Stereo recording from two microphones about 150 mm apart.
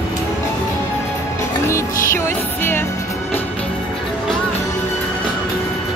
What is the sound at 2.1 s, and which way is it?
Music, 15° left (ahead or behind).